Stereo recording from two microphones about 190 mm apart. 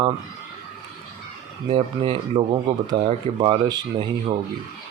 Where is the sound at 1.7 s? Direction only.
30° right (ahead or behind).